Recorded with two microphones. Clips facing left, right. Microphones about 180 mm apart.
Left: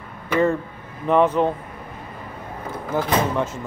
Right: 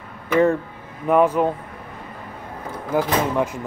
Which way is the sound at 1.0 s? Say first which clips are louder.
Right 1 dB; 10° right (ahead or behind).